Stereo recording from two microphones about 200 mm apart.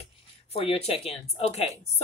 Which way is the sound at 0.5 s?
30° left (ahead or behind).